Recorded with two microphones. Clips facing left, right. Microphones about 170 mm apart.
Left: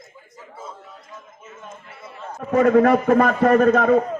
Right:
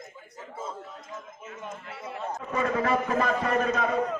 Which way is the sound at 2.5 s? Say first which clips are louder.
Left 12 dB; 55° left (ahead or behind).